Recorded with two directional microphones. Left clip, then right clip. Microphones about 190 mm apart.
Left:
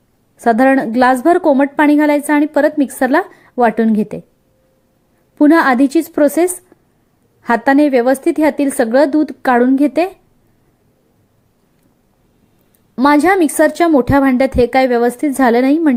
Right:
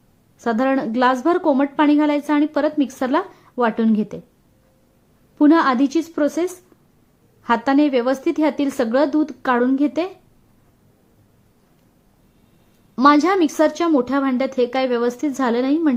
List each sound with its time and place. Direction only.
0.3 s a woman's voice: 25° left (ahead or behind)
5.4 s a woman's voice: 25° left (ahead or behind)
13.0 s a woman's voice: 20° left (ahead or behind)